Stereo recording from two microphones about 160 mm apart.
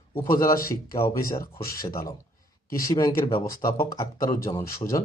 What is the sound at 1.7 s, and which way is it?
Speech, 65° left (ahead or behind).